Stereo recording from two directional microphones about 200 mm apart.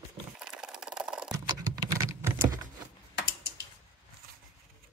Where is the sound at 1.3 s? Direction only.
15° right (ahead or behind).